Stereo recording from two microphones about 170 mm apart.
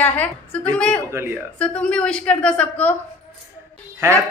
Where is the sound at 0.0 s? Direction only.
10° left (ahead or behind).